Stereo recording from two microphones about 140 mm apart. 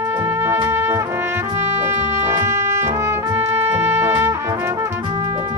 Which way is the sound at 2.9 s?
20° right (ahead or behind).